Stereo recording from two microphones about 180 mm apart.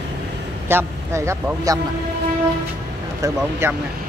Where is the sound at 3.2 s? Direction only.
15° right (ahead or behind).